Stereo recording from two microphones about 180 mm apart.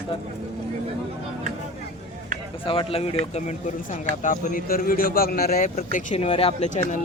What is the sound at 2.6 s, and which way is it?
Speech, 30° left (ahead or behind).